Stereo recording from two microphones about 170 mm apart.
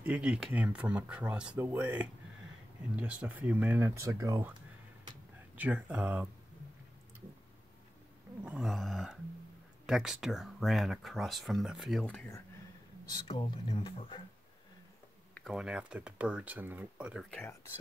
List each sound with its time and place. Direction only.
0.0 s speech: 5° right (ahead or behind)
5.6 s speech: 10° right (ahead or behind)
8.5 s a sound: 5° right (ahead or behind)
9.8 s speech: centre (ahead or behind)
13.3 s speech: 30° left (ahead or behind)
15.3 s speech: centre (ahead or behind)
17.3 s speech: 10° left (ahead or behind)